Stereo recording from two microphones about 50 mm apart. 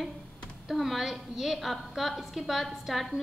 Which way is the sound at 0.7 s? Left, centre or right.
Centre.